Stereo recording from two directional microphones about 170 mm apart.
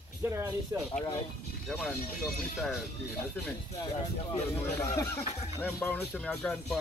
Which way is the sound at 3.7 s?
25° left (ahead or behind).